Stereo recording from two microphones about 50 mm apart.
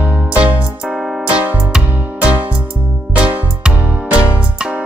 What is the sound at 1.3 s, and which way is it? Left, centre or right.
Music, right.